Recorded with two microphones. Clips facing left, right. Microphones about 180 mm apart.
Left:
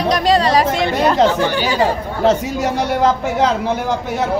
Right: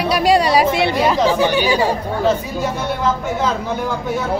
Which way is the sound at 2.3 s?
80° left.